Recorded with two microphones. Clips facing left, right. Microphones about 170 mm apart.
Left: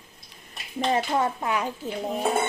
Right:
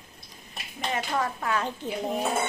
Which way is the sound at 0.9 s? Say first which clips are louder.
Left 4 dB; 25° left (ahead or behind).